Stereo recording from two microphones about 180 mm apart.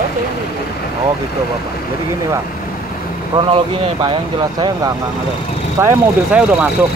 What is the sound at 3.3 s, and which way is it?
Speech, 30° right (ahead or behind).